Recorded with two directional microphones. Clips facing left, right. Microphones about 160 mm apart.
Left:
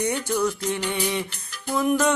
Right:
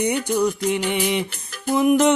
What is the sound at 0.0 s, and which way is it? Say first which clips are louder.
Music: right 4 dB; 15° right (ahead or behind).